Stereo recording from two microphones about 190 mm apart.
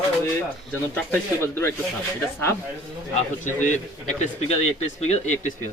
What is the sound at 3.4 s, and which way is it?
Speech, 40° left (ahead or behind).